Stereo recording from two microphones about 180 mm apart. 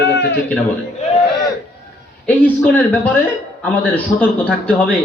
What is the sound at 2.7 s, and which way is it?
A man's voice, 10° left (ahead or behind).